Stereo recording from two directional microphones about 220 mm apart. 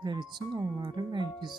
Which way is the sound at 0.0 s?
20° right (ahead or behind).